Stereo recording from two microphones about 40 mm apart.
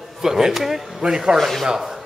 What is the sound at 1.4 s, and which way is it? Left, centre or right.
Speech, centre.